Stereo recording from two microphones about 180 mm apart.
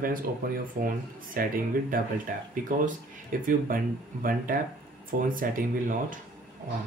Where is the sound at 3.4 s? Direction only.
50° right (ahead or behind).